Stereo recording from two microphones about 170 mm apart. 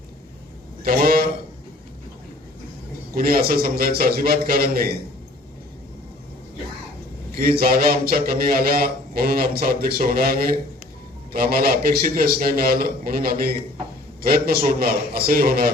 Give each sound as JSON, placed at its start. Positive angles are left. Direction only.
{"t": 0.9, "sound": "a sound", "side_deg": -60}
{"t": 3.2, "sound": "a man's voice", "side_deg": -60}
{"t": 7.3, "sound": "a man's voice", "side_deg": -60}